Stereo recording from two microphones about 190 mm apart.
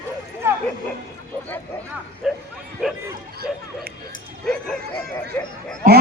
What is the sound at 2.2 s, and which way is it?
Bow-wow, 5° right (ahead or behind).